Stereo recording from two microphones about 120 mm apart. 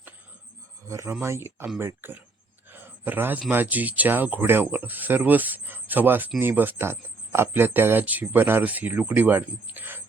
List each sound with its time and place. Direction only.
0.9 s speech: 25° right (ahead or behind)
2.6 s a sound: 15° right (ahead or behind)
3.5 s speech: 15° right (ahead or behind)